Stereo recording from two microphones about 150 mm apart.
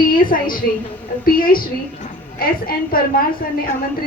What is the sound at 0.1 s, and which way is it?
A woman's voice, 70° left (ahead or behind).